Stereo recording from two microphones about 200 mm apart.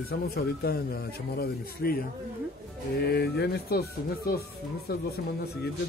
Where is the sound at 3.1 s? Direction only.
55° left (ahead or behind).